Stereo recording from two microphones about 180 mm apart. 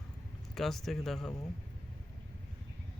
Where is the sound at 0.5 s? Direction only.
Centre (ahead or behind).